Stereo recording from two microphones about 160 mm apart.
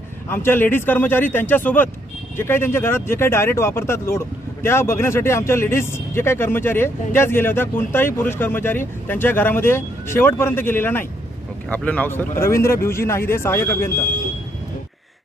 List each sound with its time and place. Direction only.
0.3 s speech: 15° left (ahead or behind)